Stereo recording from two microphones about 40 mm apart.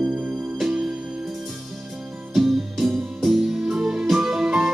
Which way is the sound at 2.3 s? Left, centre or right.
Centre.